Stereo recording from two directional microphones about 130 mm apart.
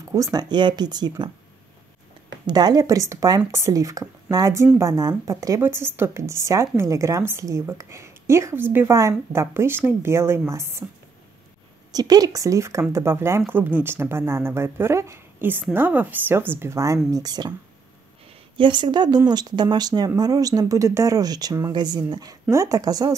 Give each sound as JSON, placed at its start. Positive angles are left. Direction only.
{"t": 0.0, "sound": "speech", "side_deg": -25}
{"t": 2.4, "sound": "a woman's voice", "side_deg": -30}
{"t": 11.9, "sound": "a woman's voice", "side_deg": -30}
{"t": 18.6, "sound": "a woman's voice", "side_deg": -35}